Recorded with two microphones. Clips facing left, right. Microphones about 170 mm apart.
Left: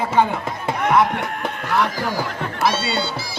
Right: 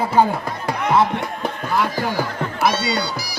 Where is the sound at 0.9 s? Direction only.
25° right (ahead or behind).